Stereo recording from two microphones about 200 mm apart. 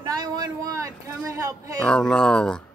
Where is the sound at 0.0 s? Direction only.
20° right (ahead or behind).